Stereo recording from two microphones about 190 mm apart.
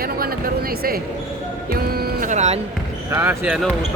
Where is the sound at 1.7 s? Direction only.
55° right (ahead or behind).